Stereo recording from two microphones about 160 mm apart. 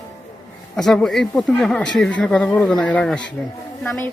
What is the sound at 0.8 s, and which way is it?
Speech, centre (ahead or behind).